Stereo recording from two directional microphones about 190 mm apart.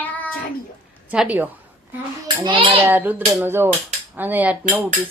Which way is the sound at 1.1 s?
5° right (ahead or behind).